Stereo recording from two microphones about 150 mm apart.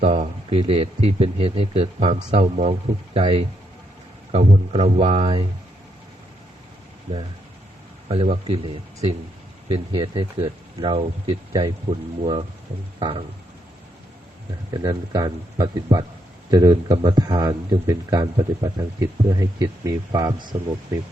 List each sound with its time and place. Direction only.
0.0 s speech: 45° right (ahead or behind)
8.0 s speech: 40° right (ahead or behind)
13.0 s a sound: 35° right (ahead or behind)
14.7 s speech: 30° right (ahead or behind)